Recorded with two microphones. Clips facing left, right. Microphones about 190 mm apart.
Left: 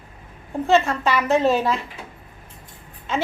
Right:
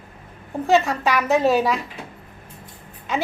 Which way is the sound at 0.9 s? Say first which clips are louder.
Even; 15° right (ahead or behind).